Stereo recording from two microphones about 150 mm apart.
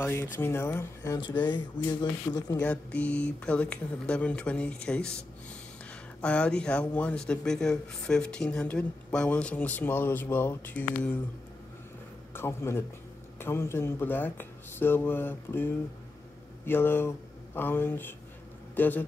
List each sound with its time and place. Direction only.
0.0 s speech: 15° left (ahead or behind)
2.6 s speech: 10° left (ahead or behind)
6.2 s speech: 10° left (ahead or behind)
12.4 s speech: 15° left (ahead or behind)